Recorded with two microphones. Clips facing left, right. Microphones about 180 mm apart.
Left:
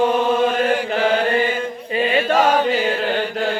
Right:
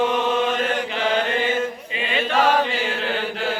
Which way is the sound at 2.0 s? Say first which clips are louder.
Left 5 dB; 45° left (ahead or behind).